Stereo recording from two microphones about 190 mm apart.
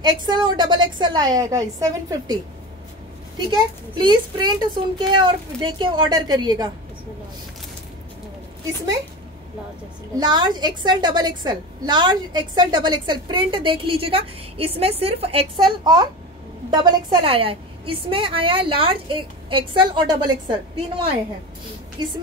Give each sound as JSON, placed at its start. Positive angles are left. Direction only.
{"t": 0.2, "sound": "a woman's voice", "side_deg": -25}
{"t": 3.4, "sound": "a woman's voice", "side_deg": -25}
{"t": 10.1, "sound": "a woman's voice", "side_deg": -25}
{"t": 22.0, "sound": "a woman's voice", "side_deg": -25}